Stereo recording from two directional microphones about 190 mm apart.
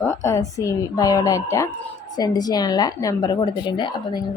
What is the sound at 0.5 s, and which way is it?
A woman's voice, 15° left (ahead or behind).